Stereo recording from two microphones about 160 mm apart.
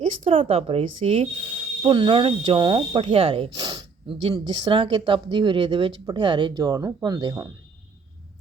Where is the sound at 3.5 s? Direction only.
25° right (ahead or behind).